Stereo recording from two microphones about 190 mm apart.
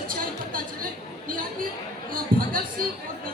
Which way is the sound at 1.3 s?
50° right (ahead or behind).